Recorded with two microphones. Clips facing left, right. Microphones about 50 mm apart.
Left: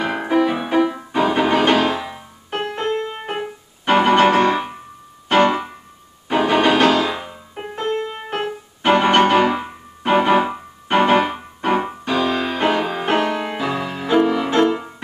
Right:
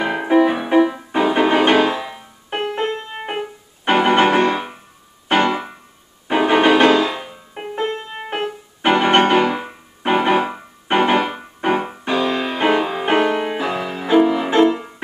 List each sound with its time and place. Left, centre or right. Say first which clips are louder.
0.0 s music: right 3 dB; centre
2.0 s music: even; centre
6.2 s music: right 2 dB; centre
7.1 s music: left 1 dB; centre
7.7 s music: left 1 dB; centre
10.3 s music: left 1 dB; centre
11.6 s keyboard: even; centre
12.0 s music: even; centre